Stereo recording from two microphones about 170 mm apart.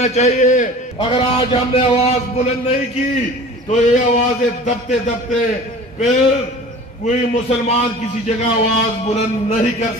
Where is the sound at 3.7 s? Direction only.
45° left (ahead or behind).